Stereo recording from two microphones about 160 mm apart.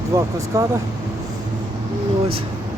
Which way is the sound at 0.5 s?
20° right (ahead or behind).